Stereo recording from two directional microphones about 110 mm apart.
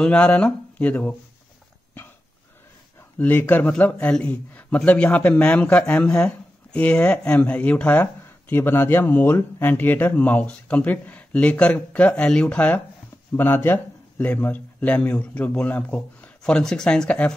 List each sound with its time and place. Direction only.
0.0 s a man's voice: 10° left (ahead or behind)
3.2 s a man's voice: 15° left (ahead or behind)